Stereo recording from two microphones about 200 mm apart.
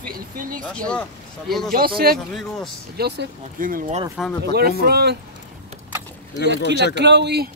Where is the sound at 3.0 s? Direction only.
55° right (ahead or behind).